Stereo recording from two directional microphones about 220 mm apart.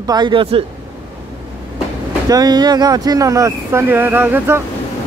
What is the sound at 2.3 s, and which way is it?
Speech, 15° right (ahead or behind).